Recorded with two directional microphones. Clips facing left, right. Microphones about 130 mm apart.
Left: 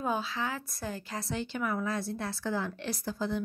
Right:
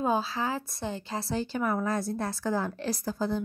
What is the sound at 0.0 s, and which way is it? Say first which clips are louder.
A woman's voice: right 4 dB; 35° right (ahead or behind).